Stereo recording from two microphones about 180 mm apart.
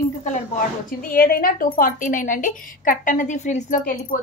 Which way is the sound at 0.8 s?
55° left (ahead or behind).